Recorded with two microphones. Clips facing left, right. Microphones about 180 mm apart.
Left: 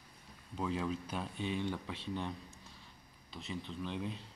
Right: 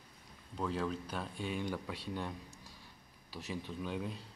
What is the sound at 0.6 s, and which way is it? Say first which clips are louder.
Speech: even; 5° left (ahead or behind).